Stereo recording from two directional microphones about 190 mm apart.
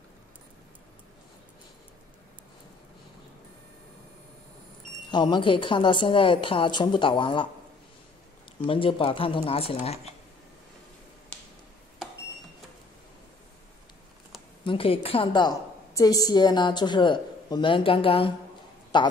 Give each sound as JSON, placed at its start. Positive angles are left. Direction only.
{"t": 5.1, "sound": "a woman's voice", "side_deg": 25}
{"t": 8.6, "sound": "a woman's voice", "side_deg": 25}
{"t": 14.6, "sound": "a woman's voice", "side_deg": 30}